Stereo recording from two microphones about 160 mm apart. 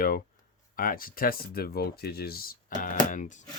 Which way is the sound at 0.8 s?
60° left (ahead or behind).